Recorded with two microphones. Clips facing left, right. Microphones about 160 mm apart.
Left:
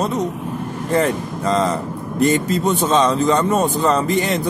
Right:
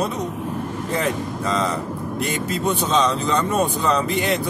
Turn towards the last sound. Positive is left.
turn(degrees=45)  # may be behind; listen again after turning